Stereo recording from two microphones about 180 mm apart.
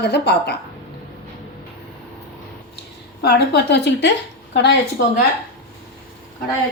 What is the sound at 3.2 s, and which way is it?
Speech, 70° left (ahead or behind).